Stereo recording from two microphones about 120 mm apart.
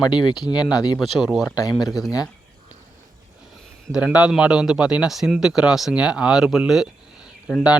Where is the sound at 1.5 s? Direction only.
30° left (ahead or behind).